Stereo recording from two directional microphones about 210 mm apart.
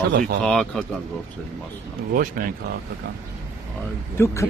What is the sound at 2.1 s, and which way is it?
Speech, 45° right (ahead or behind).